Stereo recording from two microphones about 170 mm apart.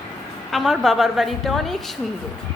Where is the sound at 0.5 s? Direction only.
Centre (ahead or behind).